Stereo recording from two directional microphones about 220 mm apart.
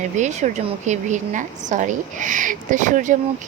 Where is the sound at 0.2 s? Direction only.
35° right (ahead or behind).